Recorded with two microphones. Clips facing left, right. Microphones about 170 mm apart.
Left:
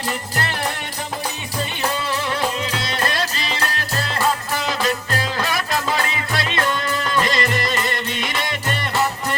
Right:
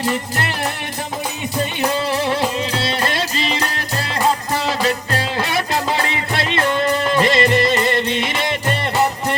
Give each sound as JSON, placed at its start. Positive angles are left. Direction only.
{"t": 2.7, "sound": "music", "side_deg": -30}
{"t": 5.1, "sound": "music", "side_deg": -30}